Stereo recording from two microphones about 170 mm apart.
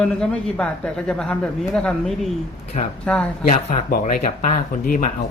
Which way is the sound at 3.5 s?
40° left (ahead or behind).